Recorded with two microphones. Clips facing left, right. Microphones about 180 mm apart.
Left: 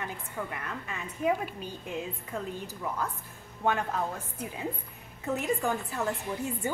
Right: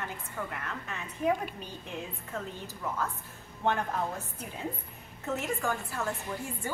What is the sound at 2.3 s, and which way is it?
Speech, 15° left (ahead or behind).